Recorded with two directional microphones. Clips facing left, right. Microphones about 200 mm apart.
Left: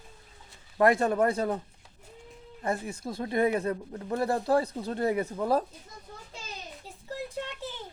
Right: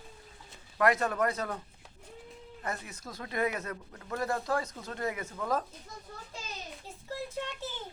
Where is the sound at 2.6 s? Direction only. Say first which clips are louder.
Left 8 dB; 30° left (ahead or behind).